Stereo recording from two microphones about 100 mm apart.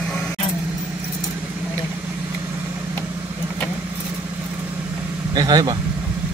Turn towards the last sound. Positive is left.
turn(degrees=-45)  # may be behind; listen again after turning